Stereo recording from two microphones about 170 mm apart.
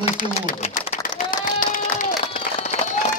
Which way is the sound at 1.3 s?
50° left (ahead or behind).